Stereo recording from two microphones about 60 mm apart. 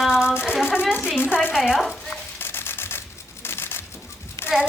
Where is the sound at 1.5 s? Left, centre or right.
Centre.